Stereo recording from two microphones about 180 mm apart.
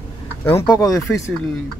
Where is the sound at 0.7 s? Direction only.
20° left (ahead or behind).